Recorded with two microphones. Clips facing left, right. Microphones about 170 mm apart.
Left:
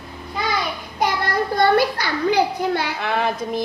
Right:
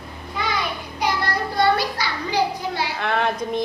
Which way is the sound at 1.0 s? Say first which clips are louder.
Left 2 dB; 50° left (ahead or behind).